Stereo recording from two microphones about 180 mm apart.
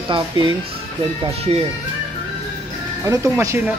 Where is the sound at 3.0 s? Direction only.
15° right (ahead or behind).